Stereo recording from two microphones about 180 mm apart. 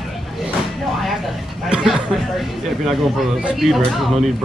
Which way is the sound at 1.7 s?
5° right (ahead or behind).